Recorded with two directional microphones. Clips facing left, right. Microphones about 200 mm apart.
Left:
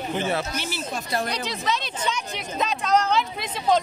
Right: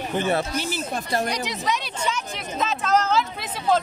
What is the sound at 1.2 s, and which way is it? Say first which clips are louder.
Speech: right 1 dB; 15° right (ahead or behind).